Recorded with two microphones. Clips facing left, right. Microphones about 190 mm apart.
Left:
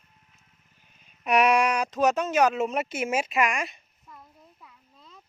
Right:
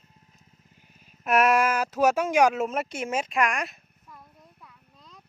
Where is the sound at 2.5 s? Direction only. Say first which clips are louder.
Left 1 dB; centre (ahead or behind).